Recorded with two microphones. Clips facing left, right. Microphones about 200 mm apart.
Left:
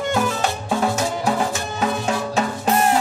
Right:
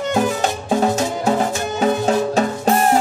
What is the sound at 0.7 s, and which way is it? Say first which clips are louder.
Music: right 4 dB; 40° right (ahead or behind).